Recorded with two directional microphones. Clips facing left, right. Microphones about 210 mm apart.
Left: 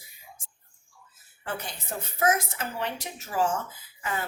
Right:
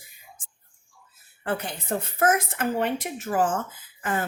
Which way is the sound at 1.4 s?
55° right (ahead or behind).